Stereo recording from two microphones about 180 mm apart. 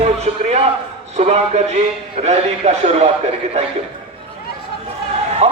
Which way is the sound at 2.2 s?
35° right (ahead or behind).